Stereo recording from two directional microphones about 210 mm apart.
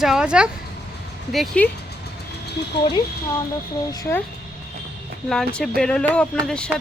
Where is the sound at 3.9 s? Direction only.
15° left (ahead or behind).